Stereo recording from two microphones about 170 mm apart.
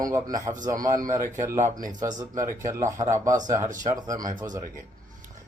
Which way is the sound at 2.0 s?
20° right (ahead or behind).